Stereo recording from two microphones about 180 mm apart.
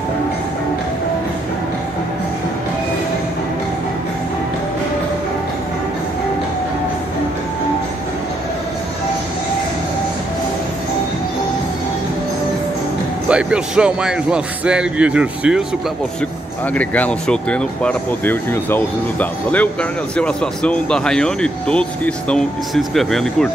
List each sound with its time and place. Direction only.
13.3 s speech: 5° right (ahead or behind)
16.7 s speech: 10° left (ahead or behind)